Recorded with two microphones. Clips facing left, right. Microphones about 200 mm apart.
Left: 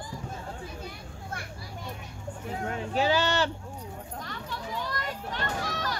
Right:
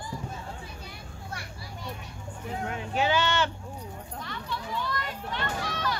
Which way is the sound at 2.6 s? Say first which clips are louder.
Left 1 dB; 35° left (ahead or behind).